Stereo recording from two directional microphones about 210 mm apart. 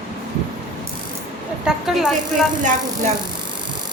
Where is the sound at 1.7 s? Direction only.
Centre (ahead or behind).